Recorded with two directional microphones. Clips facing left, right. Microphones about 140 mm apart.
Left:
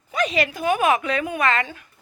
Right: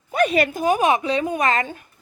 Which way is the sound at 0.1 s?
55° right (ahead or behind).